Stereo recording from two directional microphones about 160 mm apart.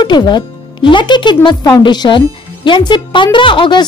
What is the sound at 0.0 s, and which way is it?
Speech, 30° left (ahead or behind).